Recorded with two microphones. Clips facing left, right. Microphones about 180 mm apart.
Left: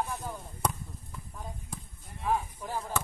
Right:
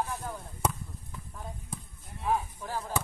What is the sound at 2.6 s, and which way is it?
Speech, 10° left (ahead or behind).